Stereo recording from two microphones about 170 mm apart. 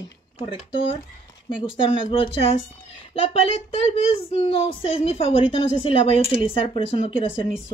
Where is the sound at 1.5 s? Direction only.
30° left (ahead or behind).